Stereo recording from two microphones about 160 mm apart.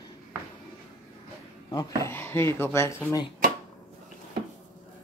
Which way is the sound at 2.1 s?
15° left (ahead or behind).